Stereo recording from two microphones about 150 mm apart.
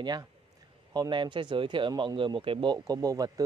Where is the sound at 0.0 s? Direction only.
30° right (ahead or behind).